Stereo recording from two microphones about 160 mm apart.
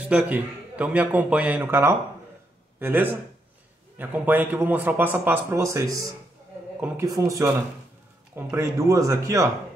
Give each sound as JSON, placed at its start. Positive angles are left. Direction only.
{"t": 0.1, "sound": "a man's voice", "side_deg": -10}